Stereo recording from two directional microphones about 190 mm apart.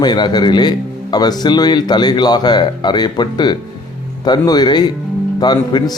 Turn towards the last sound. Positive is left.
turn(degrees=20)  # may be behind; listen again after turning